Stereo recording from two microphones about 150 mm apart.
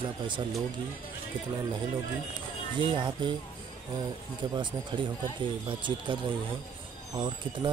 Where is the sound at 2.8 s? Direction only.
35° right (ahead or behind).